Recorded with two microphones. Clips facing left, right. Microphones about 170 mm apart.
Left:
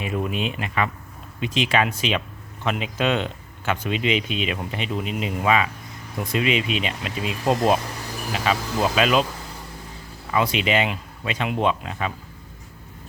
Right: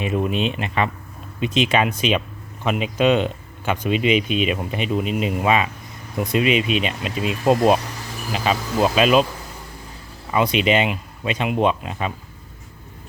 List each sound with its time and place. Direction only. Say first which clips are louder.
0.0 s speech: right 4 dB; 20° right (ahead or behind)
10.3 s speech: right 3 dB; 20° right (ahead or behind)